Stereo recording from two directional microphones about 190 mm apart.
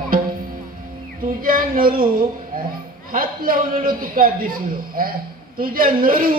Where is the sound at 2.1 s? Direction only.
50° right (ahead or behind).